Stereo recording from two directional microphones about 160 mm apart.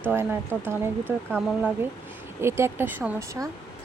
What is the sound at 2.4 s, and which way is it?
Speech, 15° right (ahead or behind).